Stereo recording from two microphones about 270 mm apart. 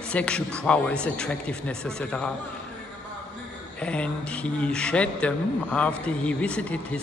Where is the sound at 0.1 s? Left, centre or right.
Centre.